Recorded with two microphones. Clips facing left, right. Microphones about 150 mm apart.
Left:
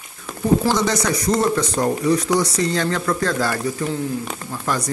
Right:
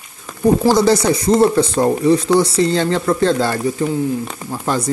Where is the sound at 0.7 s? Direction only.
30° right (ahead or behind).